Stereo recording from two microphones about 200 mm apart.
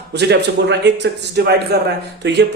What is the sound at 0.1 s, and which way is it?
A man's voice, 55° right (ahead or behind).